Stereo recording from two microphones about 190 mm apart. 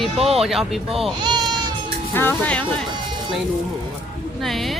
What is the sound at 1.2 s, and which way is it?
Baby cry, 25° right (ahead or behind).